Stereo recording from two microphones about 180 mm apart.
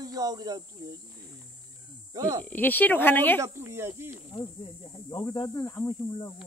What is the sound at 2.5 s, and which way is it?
Speech, 10° left (ahead or behind).